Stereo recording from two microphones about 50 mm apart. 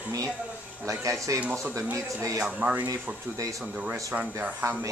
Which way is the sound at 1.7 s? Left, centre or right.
Right.